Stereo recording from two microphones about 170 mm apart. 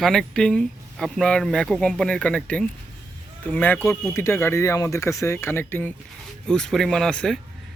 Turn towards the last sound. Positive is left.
turn(degrees=5)  # may be behind; listen again after turning